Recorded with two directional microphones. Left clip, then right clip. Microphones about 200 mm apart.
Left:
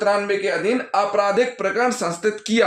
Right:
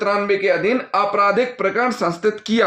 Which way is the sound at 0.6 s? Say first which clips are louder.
Right 2 dB; 40° right (ahead or behind).